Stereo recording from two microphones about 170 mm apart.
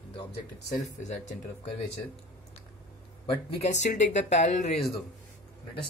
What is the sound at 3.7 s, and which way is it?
Speech, 45° left (ahead or behind).